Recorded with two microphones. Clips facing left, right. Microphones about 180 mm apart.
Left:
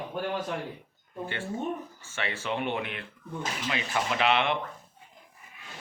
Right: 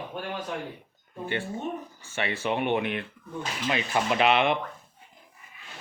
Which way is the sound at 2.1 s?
15° right (ahead or behind).